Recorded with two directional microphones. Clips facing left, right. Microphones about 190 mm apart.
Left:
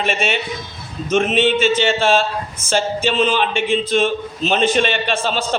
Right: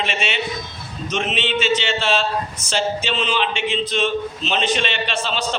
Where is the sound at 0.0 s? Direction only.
50° left (ahead or behind).